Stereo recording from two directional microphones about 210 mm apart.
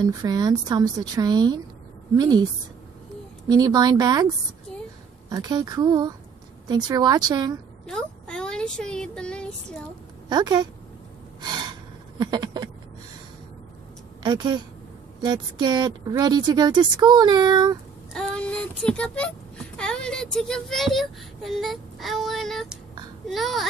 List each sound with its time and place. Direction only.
0.0 s speech: 20° right (ahead or behind)
5.3 s speech: 20° right (ahead or behind)
7.8 s speech: 5° left (ahead or behind)
10.3 s speech: 20° right (ahead or behind)
11.4 s gasp: 20° right (ahead or behind)
12.2 s a sound: 20° right (ahead or behind)
14.2 s speech: 20° right (ahead or behind)
18.1 s a child's voice: 5° left (ahead or behind)